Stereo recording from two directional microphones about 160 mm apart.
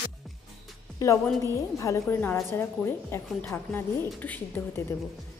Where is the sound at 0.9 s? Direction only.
20° left (ahead or behind).